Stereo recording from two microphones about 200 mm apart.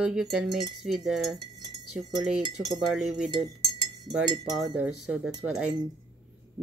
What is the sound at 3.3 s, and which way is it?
Cutlery, 20° right (ahead or behind).